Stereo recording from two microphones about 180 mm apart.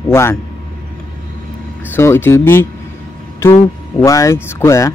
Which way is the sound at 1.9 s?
15° left (ahead or behind).